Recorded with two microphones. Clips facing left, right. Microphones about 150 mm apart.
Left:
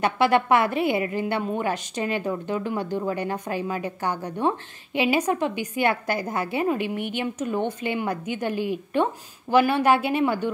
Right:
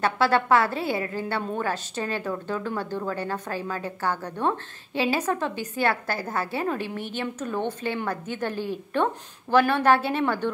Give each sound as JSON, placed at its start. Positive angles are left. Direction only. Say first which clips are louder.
{"t": 0.0, "sound": "a woman's voice", "louder": "left 2 dB", "side_deg": 15}